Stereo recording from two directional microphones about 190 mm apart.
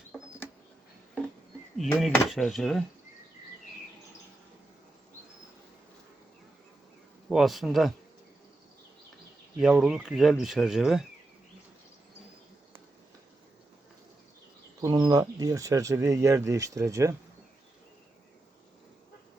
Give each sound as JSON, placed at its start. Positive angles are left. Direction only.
{"t": 1.8, "sound": "speech", "side_deg": 0}
{"t": 7.3, "sound": "speech", "side_deg": 0}
{"t": 9.6, "sound": "speech", "side_deg": -5}
{"t": 14.8, "sound": "speech", "side_deg": -20}